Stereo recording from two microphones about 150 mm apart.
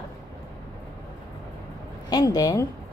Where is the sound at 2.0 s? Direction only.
25° left (ahead or behind).